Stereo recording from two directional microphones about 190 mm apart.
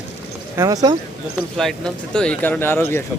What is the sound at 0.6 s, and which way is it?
Speech, 20° right (ahead or behind).